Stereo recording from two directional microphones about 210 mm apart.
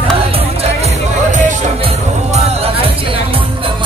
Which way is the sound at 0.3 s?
30° right (ahead or behind).